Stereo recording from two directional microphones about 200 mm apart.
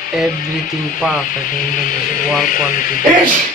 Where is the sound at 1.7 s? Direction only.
45° left (ahead or behind).